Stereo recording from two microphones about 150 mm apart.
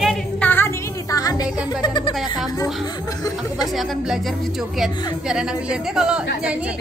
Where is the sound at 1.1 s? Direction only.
25° left (ahead or behind).